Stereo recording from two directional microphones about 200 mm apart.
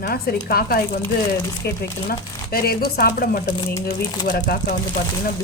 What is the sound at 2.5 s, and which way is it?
Speech, 50° left (ahead or behind).